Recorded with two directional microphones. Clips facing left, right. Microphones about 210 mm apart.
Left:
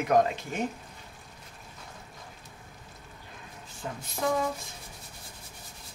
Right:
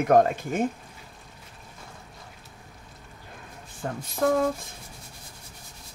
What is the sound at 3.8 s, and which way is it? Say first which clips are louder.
Speech: right 6 dB; 50° right (ahead or behind).